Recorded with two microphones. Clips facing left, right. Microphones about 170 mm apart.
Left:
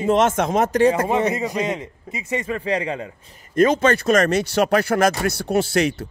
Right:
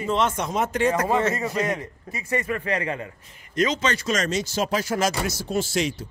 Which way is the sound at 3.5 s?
50° left (ahead or behind).